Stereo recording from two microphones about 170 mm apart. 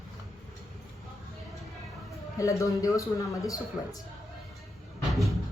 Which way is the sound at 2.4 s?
20° left (ahead or behind).